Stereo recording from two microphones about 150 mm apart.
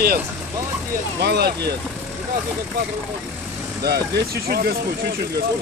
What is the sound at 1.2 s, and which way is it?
Speech, 90° right.